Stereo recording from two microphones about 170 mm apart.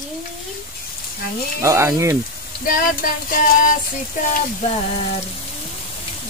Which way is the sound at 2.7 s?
55° left (ahead or behind).